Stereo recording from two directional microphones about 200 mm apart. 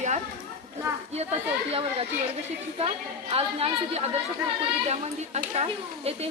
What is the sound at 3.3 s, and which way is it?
Speech, 30° right (ahead or behind).